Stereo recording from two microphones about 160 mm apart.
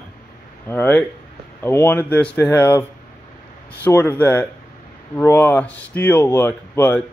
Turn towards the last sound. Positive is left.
turn(degrees=10)  # may be behind; listen again after turning